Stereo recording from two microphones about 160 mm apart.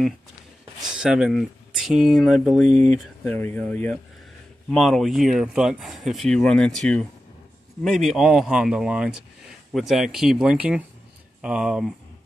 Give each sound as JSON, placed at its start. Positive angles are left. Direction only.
{"t": 0.8, "sound": "speech", "side_deg": -5}
{"t": 2.7, "sound": "speech", "side_deg": -45}
{"t": 3.0, "sound": "speech", "side_deg": 10}